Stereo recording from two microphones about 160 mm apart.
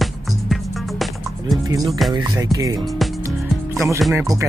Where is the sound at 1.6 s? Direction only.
25° right (ahead or behind).